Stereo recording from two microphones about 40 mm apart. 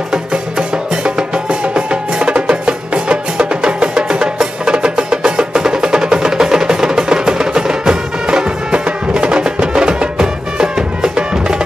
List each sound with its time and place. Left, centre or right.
0.1 s music: right